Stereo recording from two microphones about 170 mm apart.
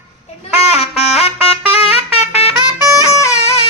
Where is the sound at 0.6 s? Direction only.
40° left (ahead or behind).